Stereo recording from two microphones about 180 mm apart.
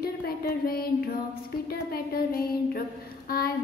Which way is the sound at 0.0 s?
55° left (ahead or behind).